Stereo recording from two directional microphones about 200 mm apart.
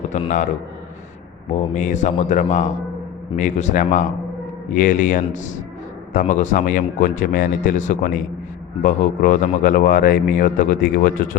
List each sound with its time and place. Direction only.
0.1 s speech: 40° left (ahead or behind)
1.5 s speech: 35° left (ahead or behind)